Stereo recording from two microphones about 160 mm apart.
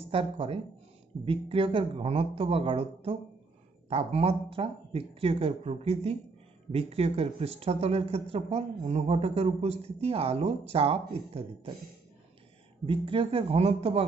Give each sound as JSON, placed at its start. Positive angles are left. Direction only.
{"t": 0.1, "sound": "speech", "side_deg": -35}
{"t": 12.8, "sound": "speech", "side_deg": -35}